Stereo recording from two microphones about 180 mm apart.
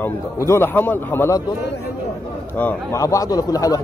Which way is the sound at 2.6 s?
15° left (ahead or behind).